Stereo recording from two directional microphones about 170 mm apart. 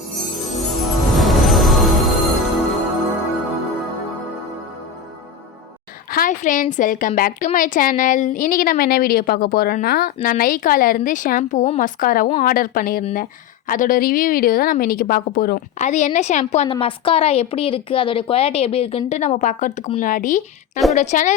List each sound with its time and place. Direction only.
0.3 s music: centre (ahead or behind)
6.1 s a woman's voice: 55° left (ahead or behind)
15.8 s a woman's voice: 45° left (ahead or behind)